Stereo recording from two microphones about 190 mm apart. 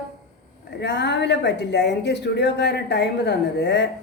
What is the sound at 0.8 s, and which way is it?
Speech, 65° left (ahead or behind).